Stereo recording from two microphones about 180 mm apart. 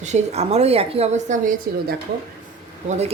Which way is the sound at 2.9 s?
35° right (ahead or behind).